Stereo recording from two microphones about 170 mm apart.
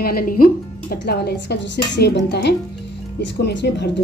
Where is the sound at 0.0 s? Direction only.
60° left (ahead or behind).